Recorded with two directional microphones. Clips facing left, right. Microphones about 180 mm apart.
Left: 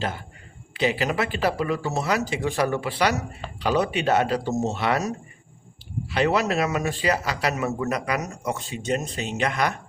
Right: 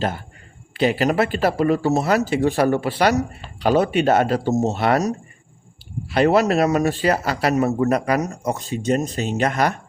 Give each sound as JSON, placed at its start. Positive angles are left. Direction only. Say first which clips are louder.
{"t": 0.9, "sound": "speech", "louder": "right 5 dB", "side_deg": -50}
{"t": 6.1, "sound": "speech", "louder": "right 6 dB", "side_deg": -40}